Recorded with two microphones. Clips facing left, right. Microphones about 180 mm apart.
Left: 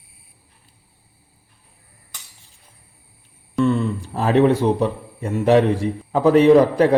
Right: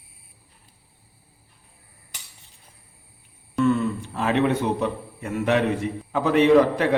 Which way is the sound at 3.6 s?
35° left (ahead or behind).